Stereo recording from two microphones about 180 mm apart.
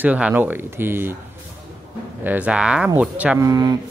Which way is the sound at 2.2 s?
5° right (ahead or behind).